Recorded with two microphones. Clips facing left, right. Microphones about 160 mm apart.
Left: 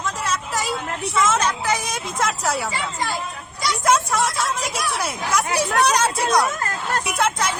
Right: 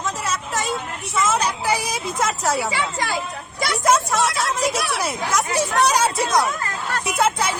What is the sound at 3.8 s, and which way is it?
A woman's voice, centre (ahead or behind).